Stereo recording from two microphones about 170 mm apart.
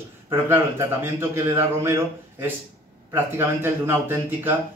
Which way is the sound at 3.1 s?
15° right (ahead or behind).